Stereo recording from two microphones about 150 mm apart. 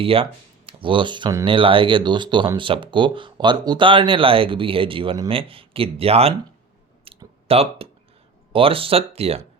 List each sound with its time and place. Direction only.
0.0 s speech: 40° right (ahead or behind)
7.1 s a sound: 40° right (ahead or behind)
7.4 s speech: 40° right (ahead or behind)